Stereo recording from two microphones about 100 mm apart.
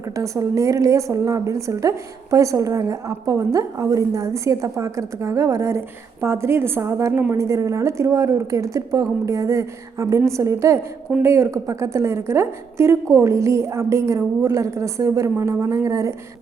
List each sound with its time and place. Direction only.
0.2 s a woman's voice: 30° right (ahead or behind)